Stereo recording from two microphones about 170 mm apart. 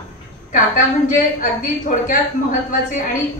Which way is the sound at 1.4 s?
50° left (ahead or behind).